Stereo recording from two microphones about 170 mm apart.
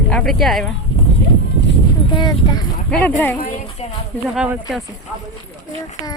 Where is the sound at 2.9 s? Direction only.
10° left (ahead or behind).